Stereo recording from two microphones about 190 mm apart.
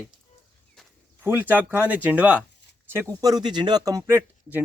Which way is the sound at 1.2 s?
10° right (ahead or behind).